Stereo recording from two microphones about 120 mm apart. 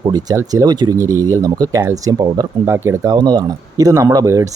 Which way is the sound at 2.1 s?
35° right (ahead or behind).